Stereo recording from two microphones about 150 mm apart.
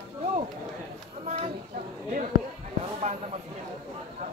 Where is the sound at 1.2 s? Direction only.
50° right (ahead or behind).